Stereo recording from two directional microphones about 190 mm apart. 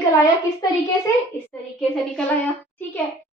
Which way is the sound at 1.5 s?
5° left (ahead or behind).